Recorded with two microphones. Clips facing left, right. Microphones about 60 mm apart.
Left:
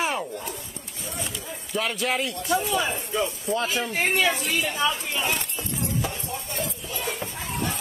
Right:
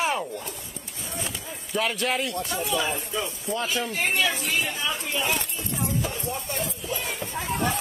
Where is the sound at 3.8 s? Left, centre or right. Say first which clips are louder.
Left 2 dB; left.